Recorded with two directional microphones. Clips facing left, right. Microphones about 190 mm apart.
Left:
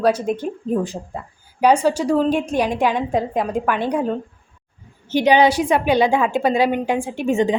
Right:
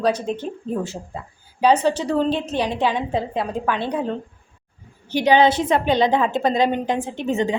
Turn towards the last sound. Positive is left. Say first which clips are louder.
# left 3 dB
turn(degrees=15)  # may be behind; listen again after turning